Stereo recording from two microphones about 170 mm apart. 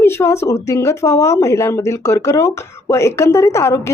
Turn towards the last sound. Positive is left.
turn(degrees=15)  # may be behind; listen again after turning